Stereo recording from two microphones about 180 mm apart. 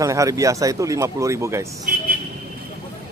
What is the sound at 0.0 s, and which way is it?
Speech, 20° right (ahead or behind).